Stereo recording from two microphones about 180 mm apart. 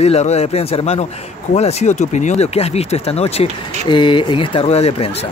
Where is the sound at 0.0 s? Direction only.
35° left (ahead or behind).